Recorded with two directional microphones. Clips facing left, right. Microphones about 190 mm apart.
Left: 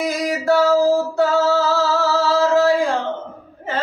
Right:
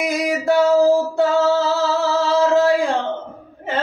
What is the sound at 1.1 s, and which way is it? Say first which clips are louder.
Female singing: even; 20° right (ahead or behind).